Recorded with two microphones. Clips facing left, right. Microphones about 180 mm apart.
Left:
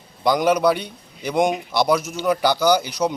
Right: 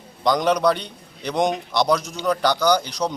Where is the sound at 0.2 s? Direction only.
5° left (ahead or behind).